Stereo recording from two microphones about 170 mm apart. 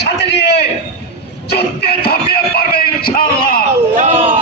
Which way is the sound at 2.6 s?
65° left (ahead or behind).